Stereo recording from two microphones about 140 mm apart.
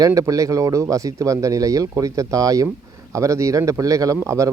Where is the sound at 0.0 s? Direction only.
25° right (ahead or behind).